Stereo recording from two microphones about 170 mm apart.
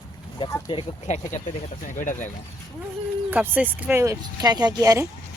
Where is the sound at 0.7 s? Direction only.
45° left (ahead or behind).